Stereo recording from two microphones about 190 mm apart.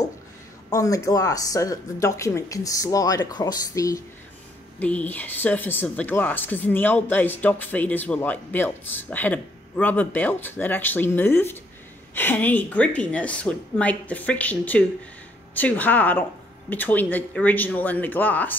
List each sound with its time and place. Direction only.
0.7 s a woman's voice: 15° left (ahead or behind)